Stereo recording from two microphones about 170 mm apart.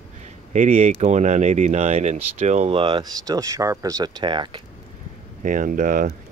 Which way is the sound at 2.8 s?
25° right (ahead or behind).